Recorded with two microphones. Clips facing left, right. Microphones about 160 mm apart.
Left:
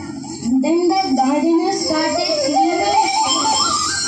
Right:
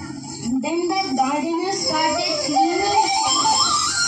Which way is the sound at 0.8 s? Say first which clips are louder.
Left 6 dB; 35° left (ahead or behind).